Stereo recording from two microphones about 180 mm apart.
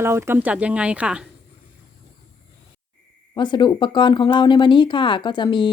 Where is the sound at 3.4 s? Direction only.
25° left (ahead or behind).